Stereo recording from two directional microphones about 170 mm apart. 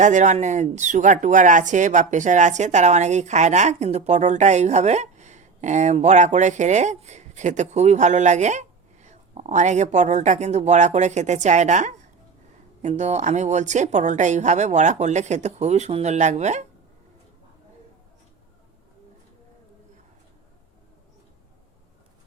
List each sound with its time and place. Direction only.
0.0 s speech: 45° right (ahead or behind)